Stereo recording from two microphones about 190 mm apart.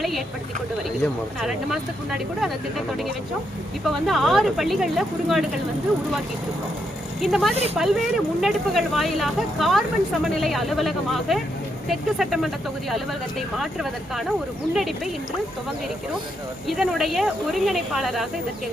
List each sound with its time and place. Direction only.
1.4 s speech: 5° right (ahead or behind)
7.2 s speech: centre (ahead or behind)
7.5 s speech: 35° right (ahead or behind)
8.4 s speech: centre (ahead or behind)
13.6 s speech: centre (ahead or behind)
16.6 s speech: centre (ahead or behind)